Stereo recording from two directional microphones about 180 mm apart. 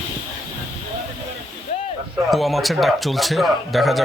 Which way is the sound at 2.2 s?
Centre (ahead or behind).